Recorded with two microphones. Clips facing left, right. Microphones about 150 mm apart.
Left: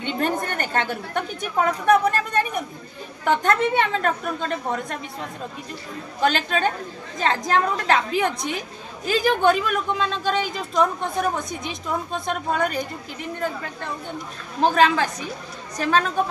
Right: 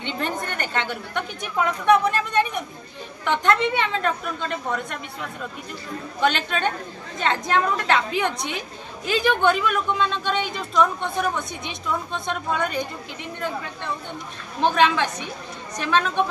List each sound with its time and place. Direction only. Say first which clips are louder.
0.0 s a woman's voice: left 4 dB; 45° left (ahead or behind)
14.6 s a woman's voice: left 1 dB; 40° left (ahead or behind)